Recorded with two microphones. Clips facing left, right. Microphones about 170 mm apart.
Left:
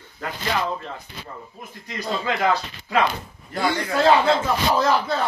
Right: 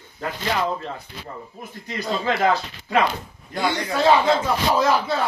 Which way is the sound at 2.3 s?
30° right (ahead or behind).